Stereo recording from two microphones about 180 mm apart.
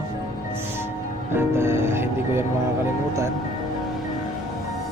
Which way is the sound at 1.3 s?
15° right (ahead or behind).